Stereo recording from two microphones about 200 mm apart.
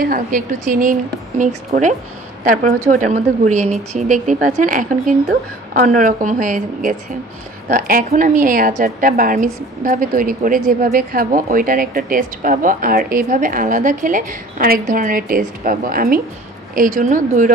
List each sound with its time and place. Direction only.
0.0 s a woman's voice: 45° right (ahead or behind)